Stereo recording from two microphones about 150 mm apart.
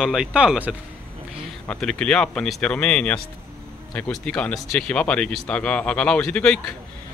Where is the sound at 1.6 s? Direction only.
5° left (ahead or behind).